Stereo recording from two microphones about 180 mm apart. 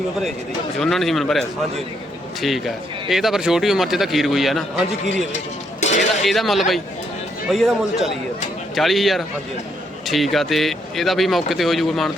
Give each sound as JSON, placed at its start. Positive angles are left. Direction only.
{"t": 0.8, "sound": "speech", "side_deg": 0}
{"t": 5.8, "sound": "a sound", "side_deg": 40}
{"t": 6.2, "sound": "speech", "side_deg": 0}